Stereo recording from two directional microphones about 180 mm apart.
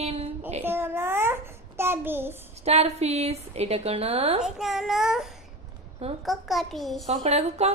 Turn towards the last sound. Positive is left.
turn(degrees=-35)  # may be behind; listen again after turning